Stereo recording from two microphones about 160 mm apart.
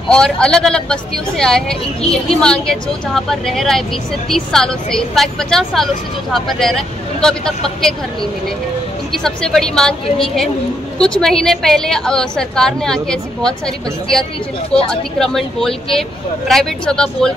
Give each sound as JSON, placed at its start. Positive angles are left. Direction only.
{"t": 0.1, "sound": "a woman's voice", "side_deg": 5}
{"t": 9.1, "sound": "a woman's voice", "side_deg": 5}
{"t": 11.0, "sound": "a woman's voice", "side_deg": 5}
{"t": 14.9, "sound": "a woman's voice", "side_deg": 5}